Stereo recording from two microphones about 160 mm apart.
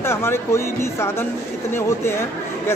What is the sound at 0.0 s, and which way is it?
Speech, 15° left (ahead or behind).